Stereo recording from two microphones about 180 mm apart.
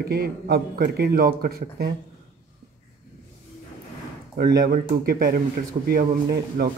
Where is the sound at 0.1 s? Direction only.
60° right (ahead or behind).